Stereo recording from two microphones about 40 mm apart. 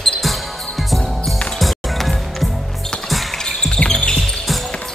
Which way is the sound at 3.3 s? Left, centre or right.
Centre.